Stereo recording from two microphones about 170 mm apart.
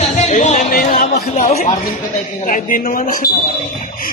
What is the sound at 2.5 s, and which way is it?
Speech, 50° left (ahead or behind).